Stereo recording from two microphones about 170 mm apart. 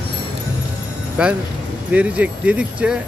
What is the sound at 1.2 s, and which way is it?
Speech, 5° right (ahead or behind).